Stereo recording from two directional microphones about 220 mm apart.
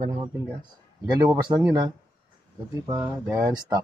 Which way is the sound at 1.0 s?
15° right (ahead or behind).